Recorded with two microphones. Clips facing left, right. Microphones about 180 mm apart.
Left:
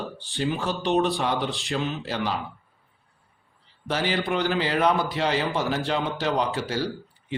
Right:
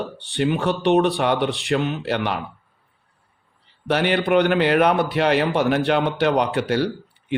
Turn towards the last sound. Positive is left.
turn(degrees=-65)  # may be behind; listen again after turning